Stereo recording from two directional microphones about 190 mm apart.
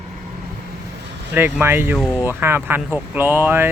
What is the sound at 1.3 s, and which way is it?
Speech, 10° right (ahead or behind).